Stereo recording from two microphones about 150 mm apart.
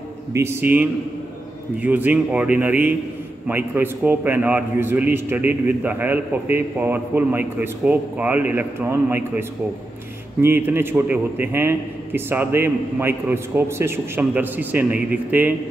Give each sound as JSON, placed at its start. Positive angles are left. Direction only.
{"t": 0.3, "sound": "a man's voice", "side_deg": -15}